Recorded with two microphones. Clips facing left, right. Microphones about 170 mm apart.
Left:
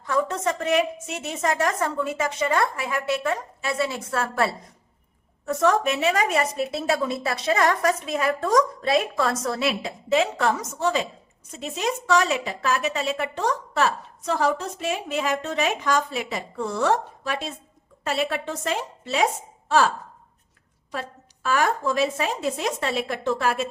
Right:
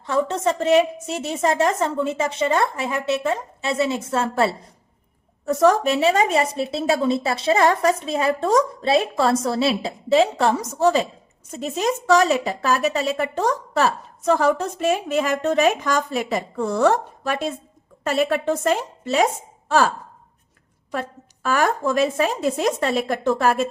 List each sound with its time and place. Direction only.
0.0 s a woman's voice: 25° right (ahead or behind)
5.5 s a woman's voice: 35° right (ahead or behind)
20.9 s a woman's voice: 50° right (ahead or behind)